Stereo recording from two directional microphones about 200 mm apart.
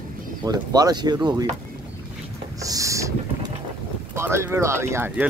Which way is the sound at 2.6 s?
15° right (ahead or behind).